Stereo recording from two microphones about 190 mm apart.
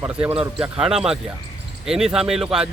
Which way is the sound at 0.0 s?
10° right (ahead or behind).